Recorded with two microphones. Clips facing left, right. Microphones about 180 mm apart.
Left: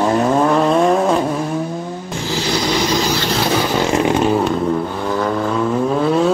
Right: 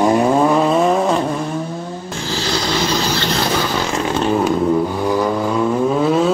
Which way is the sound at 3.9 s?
15° left (ahead or behind).